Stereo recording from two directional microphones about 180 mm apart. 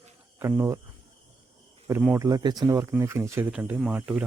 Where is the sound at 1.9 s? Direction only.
10° right (ahead or behind).